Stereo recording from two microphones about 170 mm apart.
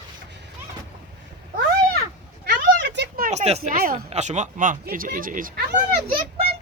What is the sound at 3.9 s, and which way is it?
Speech, 40° right (ahead or behind).